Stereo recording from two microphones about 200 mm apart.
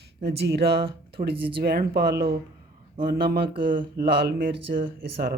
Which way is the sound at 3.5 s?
25° right (ahead or behind).